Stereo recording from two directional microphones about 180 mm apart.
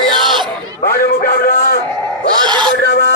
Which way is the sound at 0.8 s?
55° left (ahead or behind).